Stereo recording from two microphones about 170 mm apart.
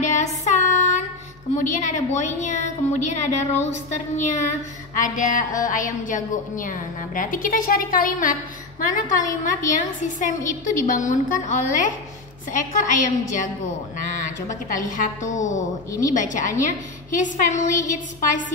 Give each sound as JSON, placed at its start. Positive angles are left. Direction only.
{"t": 0.1, "sound": "music", "side_deg": 45}
{"t": 1.5, "sound": "a woman's voice", "side_deg": 45}